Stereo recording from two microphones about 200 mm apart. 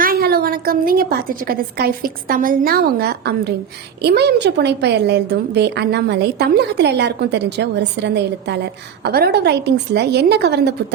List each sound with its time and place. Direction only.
0.0 s a woman's voice: 50° right (ahead or behind)